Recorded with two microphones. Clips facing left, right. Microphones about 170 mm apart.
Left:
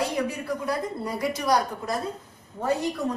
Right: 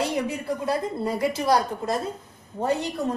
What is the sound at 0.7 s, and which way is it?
A woman's voice, 25° right (ahead or behind).